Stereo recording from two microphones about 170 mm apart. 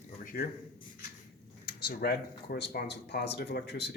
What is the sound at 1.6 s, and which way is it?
Speech, 65° left (ahead or behind).